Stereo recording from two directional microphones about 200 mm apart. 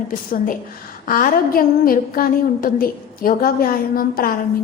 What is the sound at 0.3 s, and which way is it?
A woman's voice, 45° left (ahead or behind).